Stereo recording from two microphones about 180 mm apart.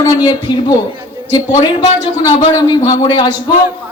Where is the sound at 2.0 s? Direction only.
25° left (ahead or behind).